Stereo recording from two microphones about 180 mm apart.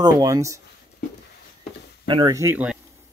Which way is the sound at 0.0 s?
20° right (ahead or behind).